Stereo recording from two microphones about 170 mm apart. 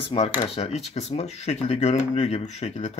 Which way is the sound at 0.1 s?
35° left (ahead or behind).